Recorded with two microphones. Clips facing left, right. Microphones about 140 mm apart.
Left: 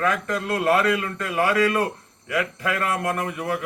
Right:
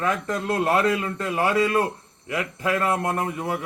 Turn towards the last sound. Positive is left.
turn(degrees=-25)  # may be behind; listen again after turning